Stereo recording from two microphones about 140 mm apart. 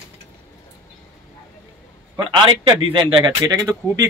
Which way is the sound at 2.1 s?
35° right (ahead or behind).